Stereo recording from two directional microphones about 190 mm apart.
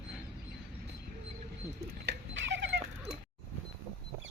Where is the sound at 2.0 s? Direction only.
65° right (ahead or behind).